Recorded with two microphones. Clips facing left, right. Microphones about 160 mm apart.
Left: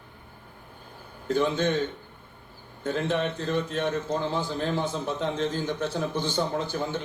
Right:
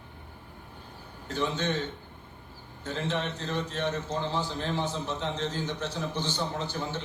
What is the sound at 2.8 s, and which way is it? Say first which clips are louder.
A man's voice: left 5 dB; 55° left (ahead or behind).